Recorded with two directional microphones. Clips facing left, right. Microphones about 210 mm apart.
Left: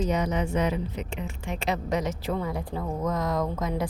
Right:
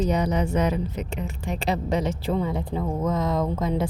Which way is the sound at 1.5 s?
30° right (ahead or behind).